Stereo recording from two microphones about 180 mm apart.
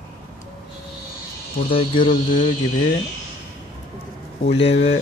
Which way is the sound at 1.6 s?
30° left (ahead or behind).